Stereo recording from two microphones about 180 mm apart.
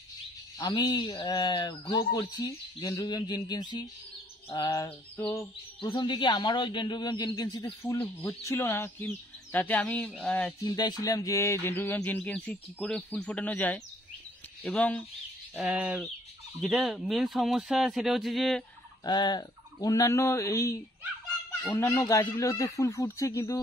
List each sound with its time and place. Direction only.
0.6 s speech: 20° left (ahead or behind)
8.5 s bird: 15° left (ahead or behind)
10.6 s bird: 20° left (ahead or behind)
14.6 s speech: 5° left (ahead or behind)
15.5 s speech: 5° right (ahead or behind)
19.0 s bird: 25° left (ahead or behind)